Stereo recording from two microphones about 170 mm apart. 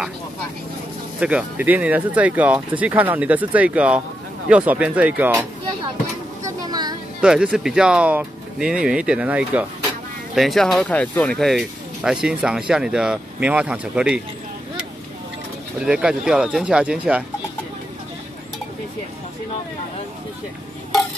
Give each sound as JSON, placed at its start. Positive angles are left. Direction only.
{"t": 1.2, "sound": "speech", "side_deg": -10}
{"t": 6.4, "sound": "a sound", "side_deg": -20}
{"t": 7.2, "sound": "speech", "side_deg": -5}
{"t": 15.8, "sound": "speech", "side_deg": -5}